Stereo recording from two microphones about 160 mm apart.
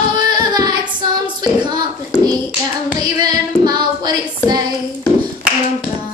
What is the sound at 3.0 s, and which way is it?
Child singing, 25° right (ahead or behind).